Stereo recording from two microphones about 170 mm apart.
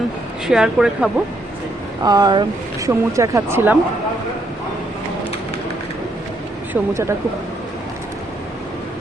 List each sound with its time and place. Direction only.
0.4 s speech: 5° right (ahead or behind)
2.0 s speech: 25° right (ahead or behind)
6.8 s speech: 5° right (ahead or behind)